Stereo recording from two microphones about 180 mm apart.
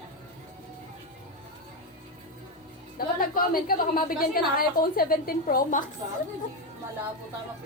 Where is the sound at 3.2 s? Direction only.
55° left (ahead or behind).